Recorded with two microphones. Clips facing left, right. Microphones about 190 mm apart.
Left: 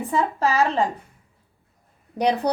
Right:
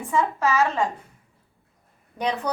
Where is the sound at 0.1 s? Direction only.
35° left (ahead or behind).